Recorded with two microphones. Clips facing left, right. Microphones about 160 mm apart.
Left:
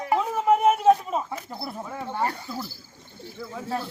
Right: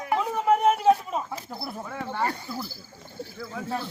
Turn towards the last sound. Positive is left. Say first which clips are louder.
# left 1 dB
turn(degrees=0)  # may be behind; listen again after turning